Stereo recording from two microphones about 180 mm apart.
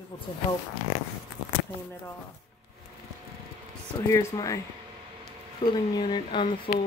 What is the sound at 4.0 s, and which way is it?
Speech, 15° left (ahead or behind).